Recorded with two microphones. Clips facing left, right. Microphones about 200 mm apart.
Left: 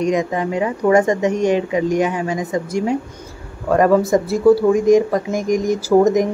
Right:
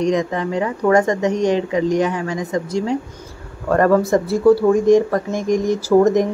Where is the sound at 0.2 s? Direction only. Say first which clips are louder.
Left 1 dB; 20° left (ahead or behind).